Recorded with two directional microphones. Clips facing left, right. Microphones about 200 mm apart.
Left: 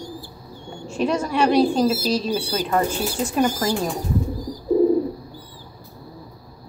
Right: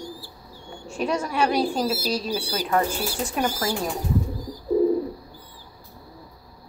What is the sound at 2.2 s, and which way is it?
Speech, 20° left (ahead or behind).